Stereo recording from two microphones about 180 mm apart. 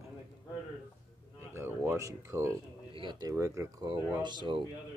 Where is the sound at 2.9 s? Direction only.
25° right (ahead or behind).